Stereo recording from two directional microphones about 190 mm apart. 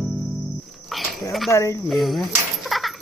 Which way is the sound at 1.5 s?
15° left (ahead or behind).